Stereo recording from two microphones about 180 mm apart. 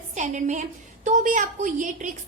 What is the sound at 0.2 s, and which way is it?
A woman's voice, 40° right (ahead or behind).